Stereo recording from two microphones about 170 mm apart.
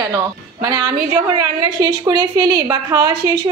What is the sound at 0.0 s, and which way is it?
Speech, 20° right (ahead or behind).